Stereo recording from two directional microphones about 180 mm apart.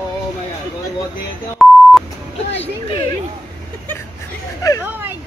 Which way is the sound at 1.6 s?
Centre (ahead or behind).